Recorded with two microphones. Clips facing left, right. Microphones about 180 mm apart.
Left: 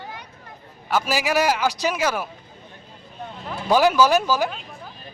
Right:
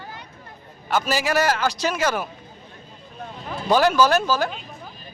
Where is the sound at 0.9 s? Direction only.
10° left (ahead or behind).